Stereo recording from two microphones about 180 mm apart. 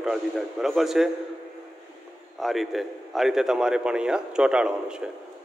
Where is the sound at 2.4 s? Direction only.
Centre (ahead or behind).